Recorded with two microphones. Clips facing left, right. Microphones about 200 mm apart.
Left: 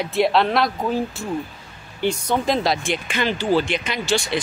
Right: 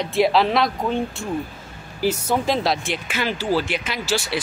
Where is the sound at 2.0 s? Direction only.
5° right (ahead or behind).